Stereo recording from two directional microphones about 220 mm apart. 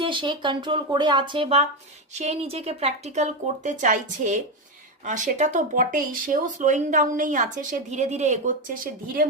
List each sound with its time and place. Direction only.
0.0 s speech: 20° right (ahead or behind); by 9.2 s 40° right (ahead or behind)